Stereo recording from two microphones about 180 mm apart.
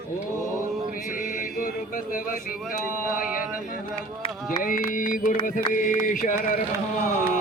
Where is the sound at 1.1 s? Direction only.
50° left (ahead or behind).